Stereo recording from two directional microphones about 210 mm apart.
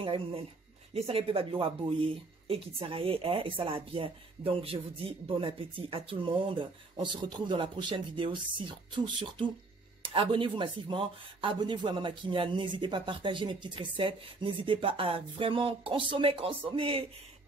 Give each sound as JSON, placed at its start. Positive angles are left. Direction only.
{"t": 0.0, "sound": "speech", "side_deg": -25}